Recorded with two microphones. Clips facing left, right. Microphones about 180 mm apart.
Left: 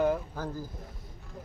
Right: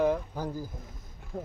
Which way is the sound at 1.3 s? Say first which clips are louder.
Right 9 dB; 55° right (ahead or behind).